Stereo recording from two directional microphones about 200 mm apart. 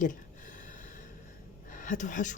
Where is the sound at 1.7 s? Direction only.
40° left (ahead or behind).